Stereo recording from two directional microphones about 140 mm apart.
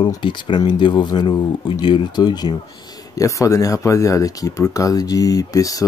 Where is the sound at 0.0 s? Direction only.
35° left (ahead or behind).